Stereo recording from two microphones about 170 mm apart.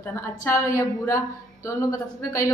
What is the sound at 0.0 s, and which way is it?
A woman's voice, 15° left (ahead or behind).